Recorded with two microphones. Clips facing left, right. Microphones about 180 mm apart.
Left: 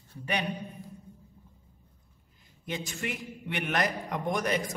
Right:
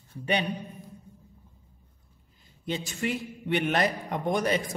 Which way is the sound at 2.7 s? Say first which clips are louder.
Right 5 dB; 30° right (ahead or behind).